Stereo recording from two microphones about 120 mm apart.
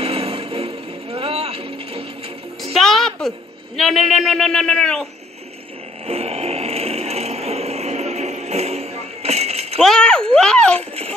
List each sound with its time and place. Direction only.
0.0 s vehicle: 50° right (ahead or behind)
2.7 s a woman's voice: centre (ahead or behind)
6.0 s sewing machine: 55° right (ahead or behind)
9.8 s a child's voice: 5° left (ahead or behind)